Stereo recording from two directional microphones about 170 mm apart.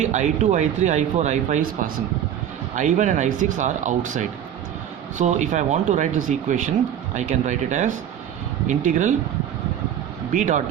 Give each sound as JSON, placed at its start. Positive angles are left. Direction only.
{"t": 0.0, "sound": "speech", "side_deg": -45}
{"t": 10.3, "sound": "speech", "side_deg": -45}